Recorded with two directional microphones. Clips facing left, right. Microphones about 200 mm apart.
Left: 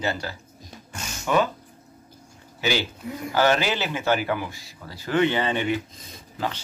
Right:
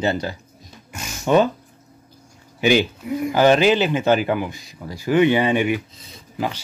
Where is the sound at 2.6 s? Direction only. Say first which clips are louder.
Right 8 dB; 15° right (ahead or behind).